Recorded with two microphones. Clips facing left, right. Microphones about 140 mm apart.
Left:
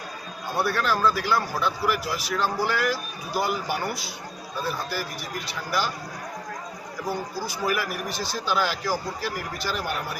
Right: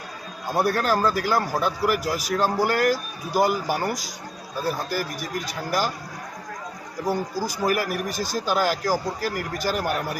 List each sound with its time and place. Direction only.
0.5 s speech: 45° right (ahead or behind)
4.6 s speech: 45° right (ahead or behind)
7.1 s speech: 45° right (ahead or behind)